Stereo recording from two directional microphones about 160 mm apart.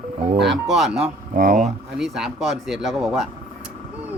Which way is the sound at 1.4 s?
60° right (ahead or behind).